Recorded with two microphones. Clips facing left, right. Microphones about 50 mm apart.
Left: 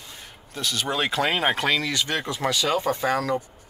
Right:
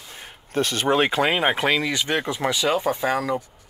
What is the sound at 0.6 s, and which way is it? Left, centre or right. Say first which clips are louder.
Speech: right 6 dB; right.